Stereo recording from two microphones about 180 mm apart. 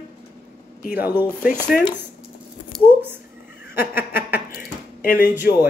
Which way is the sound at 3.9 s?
10° right (ahead or behind).